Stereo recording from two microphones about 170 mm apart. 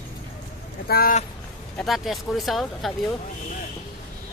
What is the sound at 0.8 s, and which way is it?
Speech, 60° left (ahead or behind).